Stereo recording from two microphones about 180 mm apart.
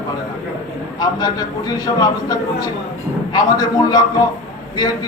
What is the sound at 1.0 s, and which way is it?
Speech, 25° left (ahead or behind).